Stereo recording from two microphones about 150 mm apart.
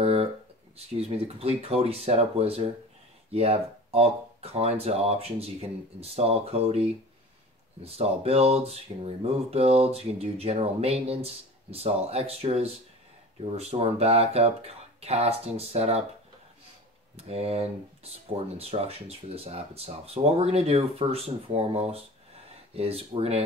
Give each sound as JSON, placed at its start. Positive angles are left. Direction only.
{"t": 0.0, "sound": "a sound", "side_deg": -40}
{"t": 0.9, "sound": "speech", "side_deg": -40}
{"t": 17.3, "sound": "speech", "side_deg": -40}